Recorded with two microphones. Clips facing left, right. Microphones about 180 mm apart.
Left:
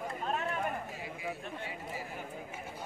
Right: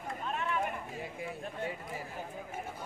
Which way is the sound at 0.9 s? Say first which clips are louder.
Even; 45° right (ahead or behind).